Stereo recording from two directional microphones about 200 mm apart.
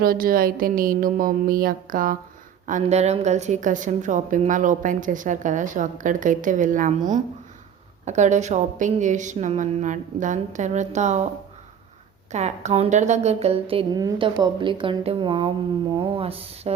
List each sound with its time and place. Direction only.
0.0 s a woman's voice: 45° right (ahead or behind)
12.3 s a woman's voice: 35° right (ahead or behind)